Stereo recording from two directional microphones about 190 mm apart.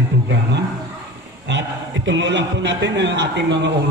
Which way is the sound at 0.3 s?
65° right (ahead or behind).